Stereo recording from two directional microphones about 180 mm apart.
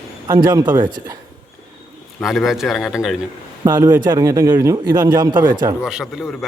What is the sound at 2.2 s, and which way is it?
Speech, centre (ahead or behind).